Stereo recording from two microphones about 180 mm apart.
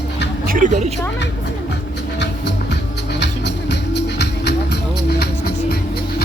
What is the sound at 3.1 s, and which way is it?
Music, 70° left (ahead or behind).